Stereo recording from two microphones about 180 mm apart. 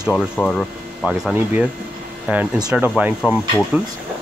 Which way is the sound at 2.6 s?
5° right (ahead or behind).